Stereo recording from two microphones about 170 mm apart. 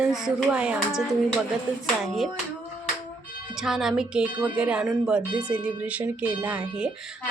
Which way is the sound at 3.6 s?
Centre (ahead or behind).